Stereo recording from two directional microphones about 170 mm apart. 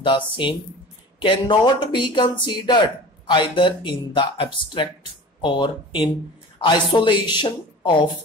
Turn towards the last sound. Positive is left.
turn(degrees=25)  # may be behind; listen again after turning